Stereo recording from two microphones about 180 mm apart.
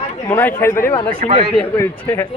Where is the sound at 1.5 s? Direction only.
10° left (ahead or behind).